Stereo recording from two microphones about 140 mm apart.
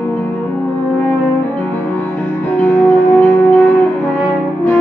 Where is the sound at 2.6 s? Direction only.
10° left (ahead or behind).